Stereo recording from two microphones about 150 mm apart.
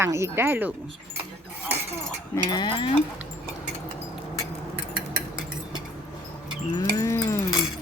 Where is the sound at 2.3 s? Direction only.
30° left (ahead or behind).